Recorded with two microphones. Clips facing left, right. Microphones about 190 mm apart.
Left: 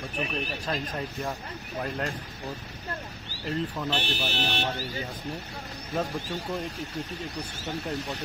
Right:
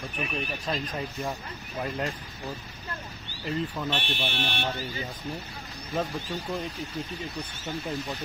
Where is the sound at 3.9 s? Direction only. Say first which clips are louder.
Left 1 dB; 35° left (ahead or behind).